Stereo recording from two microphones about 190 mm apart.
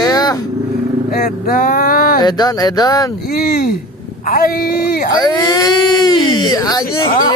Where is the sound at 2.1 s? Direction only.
20° left (ahead or behind).